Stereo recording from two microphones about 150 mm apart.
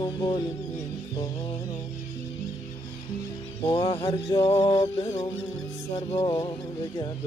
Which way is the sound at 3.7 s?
40° left (ahead or behind).